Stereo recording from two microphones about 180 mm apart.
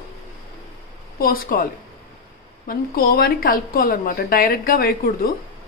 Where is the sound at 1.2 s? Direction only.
55° left (ahead or behind).